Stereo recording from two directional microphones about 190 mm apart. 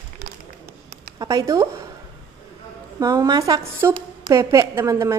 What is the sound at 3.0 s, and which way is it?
A woman's voice, 20° right (ahead or behind).